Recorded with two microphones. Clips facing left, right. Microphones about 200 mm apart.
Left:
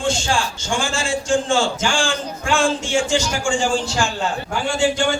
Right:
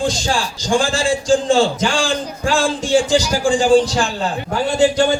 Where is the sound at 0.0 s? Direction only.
35° right (ahead or behind).